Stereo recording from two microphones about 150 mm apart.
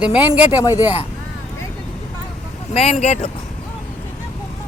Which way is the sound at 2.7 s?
45° left (ahead or behind).